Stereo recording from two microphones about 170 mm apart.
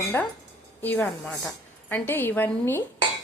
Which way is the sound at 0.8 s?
10° left (ahead or behind).